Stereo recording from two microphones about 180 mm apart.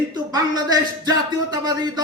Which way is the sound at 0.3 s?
20° right (ahead or behind).